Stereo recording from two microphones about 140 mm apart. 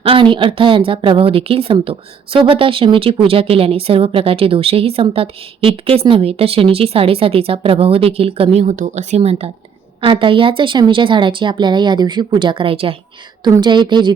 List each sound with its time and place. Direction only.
0.0 s a woman's voice: 40° right (ahead or behind)
8.5 s a woman's voice: 60° right (ahead or behind)
10.0 s speech: 35° right (ahead or behind)